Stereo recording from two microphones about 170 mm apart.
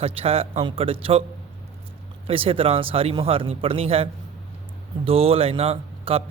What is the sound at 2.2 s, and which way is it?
A man's voice, 35° right (ahead or behind).